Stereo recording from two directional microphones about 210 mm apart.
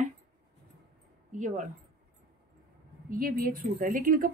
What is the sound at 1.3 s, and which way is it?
Speech, 40° right (ahead or behind).